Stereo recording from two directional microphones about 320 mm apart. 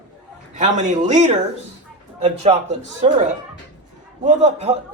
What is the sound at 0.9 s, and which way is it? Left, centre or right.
Speech, right.